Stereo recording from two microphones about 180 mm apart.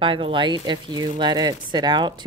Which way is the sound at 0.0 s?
30° right (ahead or behind).